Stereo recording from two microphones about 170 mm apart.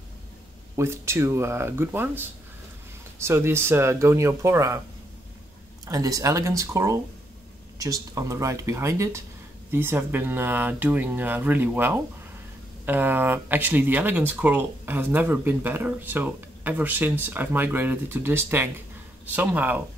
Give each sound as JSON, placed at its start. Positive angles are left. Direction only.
{"t": 0.7, "sound": "speech", "side_deg": -15}
{"t": 5.9, "sound": "speech", "side_deg": -20}